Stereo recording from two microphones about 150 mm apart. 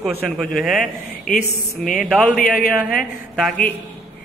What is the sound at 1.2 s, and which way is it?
Speech, 60° left (ahead or behind).